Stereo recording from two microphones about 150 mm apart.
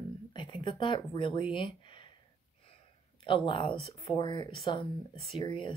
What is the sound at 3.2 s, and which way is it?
Speech, 35° left (ahead or behind).